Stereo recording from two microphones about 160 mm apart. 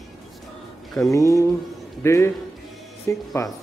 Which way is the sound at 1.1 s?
20° left (ahead or behind).